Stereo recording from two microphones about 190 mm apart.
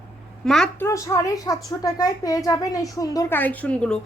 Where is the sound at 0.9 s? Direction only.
15° left (ahead or behind).